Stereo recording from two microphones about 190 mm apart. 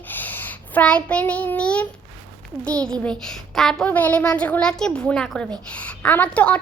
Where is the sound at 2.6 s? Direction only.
5° left (ahead or behind).